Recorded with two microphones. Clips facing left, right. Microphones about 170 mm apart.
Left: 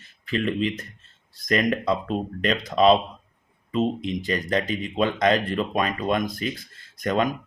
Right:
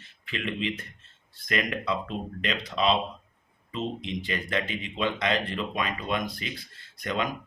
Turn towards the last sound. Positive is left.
turn(degrees=45)  # may be behind; listen again after turning